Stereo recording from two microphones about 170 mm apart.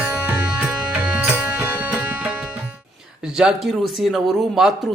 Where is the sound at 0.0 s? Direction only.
10° right (ahead or behind).